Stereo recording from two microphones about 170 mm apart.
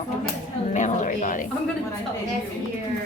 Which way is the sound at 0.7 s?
45° left (ahead or behind).